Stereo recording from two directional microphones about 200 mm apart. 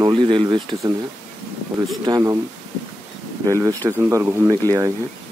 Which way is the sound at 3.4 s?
15° right (ahead or behind).